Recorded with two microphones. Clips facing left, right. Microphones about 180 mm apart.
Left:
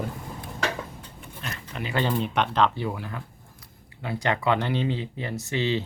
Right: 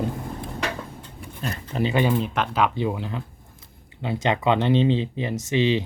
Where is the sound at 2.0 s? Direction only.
Centre (ahead or behind).